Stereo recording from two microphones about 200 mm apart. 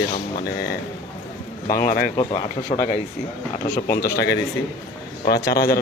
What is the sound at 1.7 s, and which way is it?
Speech, 45° left (ahead or behind).